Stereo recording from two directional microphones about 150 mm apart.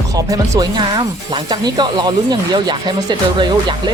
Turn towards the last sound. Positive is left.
turn(degrees=-30)  # may be behind; listen again after turning